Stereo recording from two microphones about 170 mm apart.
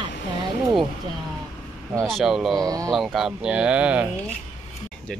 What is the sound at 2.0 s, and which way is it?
Speech, centre (ahead or behind).